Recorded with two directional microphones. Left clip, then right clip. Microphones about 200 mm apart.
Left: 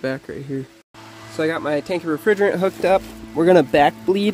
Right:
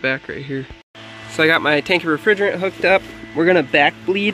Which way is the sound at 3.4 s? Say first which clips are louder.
Left 1 dB; 30° left (ahead or behind).